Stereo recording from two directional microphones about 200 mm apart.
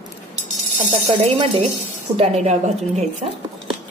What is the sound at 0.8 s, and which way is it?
A woman's voice, 35° right (ahead or behind).